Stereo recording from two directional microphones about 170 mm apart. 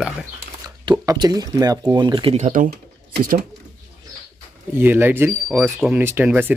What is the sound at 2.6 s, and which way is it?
Typing, 65° right (ahead or behind).